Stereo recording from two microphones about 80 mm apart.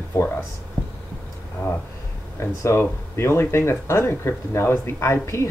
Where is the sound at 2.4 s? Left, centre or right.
Left.